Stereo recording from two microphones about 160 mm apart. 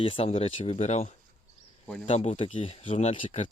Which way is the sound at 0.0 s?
35° left (ahead or behind).